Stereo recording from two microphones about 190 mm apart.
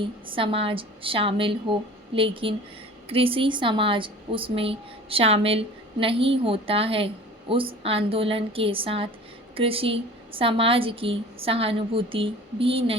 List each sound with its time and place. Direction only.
0.0 s a woman's voice: 25° right (ahead or behind)